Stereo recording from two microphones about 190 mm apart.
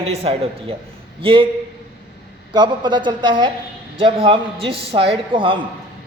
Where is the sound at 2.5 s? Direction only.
25° right (ahead or behind).